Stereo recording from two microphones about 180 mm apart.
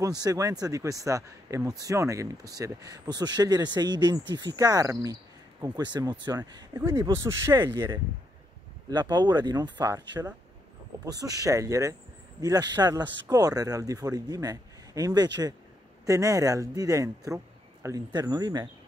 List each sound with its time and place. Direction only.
0.2 s speech: 20° right (ahead or behind)
11.1 s speech: 20° right (ahead or behind)